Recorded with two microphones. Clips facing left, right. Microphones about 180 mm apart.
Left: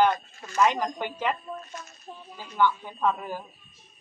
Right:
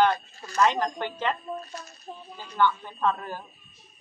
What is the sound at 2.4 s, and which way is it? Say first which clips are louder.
A woman's voice: even; 10° left (ahead or behind).